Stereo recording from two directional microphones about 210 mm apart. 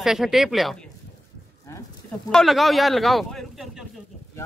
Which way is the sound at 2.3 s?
Centre (ahead or behind).